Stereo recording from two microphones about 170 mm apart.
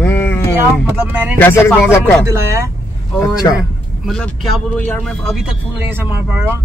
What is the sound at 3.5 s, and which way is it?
Speech, centre (ahead or behind).